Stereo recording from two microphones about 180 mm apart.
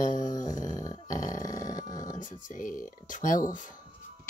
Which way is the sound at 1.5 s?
45° left (ahead or behind).